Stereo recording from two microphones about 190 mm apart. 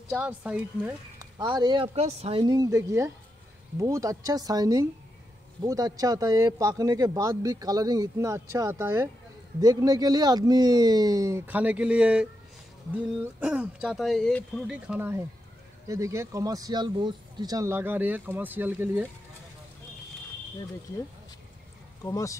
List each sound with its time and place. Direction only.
0.1 s speech: 10° right (ahead or behind)
1.2 s speech: 20° right (ahead or behind)
2.0 s speech: 35° right (ahead or behind); by 19.0 s 10° right (ahead or behind)
22.0 s speech: 15° left (ahead or behind)